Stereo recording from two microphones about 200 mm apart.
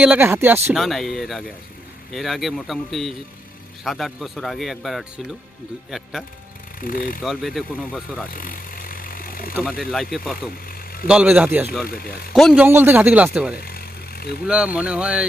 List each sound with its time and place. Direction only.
0.0 s speech: 10° right (ahead or behind)
6.7 s speech: 45° left (ahead or behind)
7.2 s speech: centre (ahead or behind)
8.3 s vehicle: 45° left (ahead or behind)
9.6 s speech: centre (ahead or behind)
10.7 s vehicle: 45° left (ahead or behind)
11.1 s speech: 5° right (ahead or behind)
11.9 s speech: 45° left (ahead or behind)
12.3 s speech: centre (ahead or behind)
13.6 s vehicle: 50° left (ahead or behind)
14.4 s speech: 5° right (ahead or behind)